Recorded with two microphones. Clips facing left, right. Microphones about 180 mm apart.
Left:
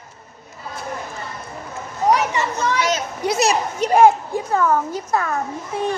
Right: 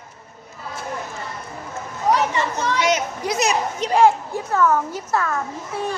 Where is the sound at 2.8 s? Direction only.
15° right (ahead or behind).